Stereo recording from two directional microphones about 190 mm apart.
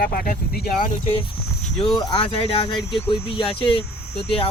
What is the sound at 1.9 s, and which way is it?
Speech, 25° left (ahead or behind).